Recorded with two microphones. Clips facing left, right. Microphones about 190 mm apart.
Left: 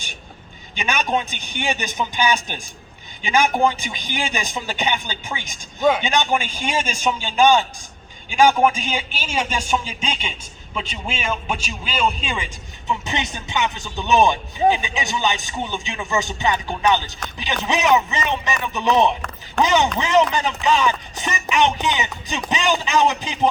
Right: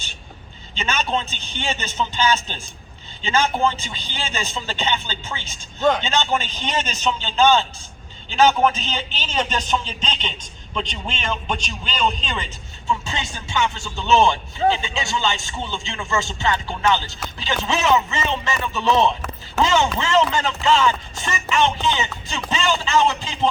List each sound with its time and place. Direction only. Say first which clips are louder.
0.8 s a man's voice: left 2 dB; 15° left (ahead or behind)